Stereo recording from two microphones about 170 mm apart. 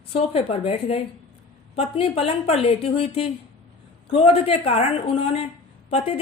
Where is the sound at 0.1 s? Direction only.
35° left (ahead or behind).